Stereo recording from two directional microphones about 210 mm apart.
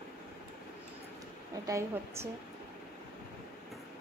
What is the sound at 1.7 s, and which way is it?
Speech, 15° right (ahead or behind).